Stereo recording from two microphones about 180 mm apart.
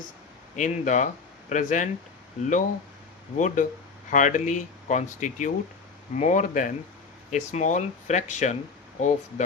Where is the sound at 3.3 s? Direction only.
45° left (ahead or behind).